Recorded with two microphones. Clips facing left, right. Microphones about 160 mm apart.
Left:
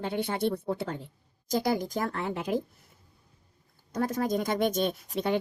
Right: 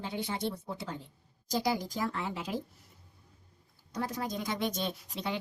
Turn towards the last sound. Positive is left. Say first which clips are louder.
# left 7 dB
turn(degrees=50)  # may be behind; listen again after turning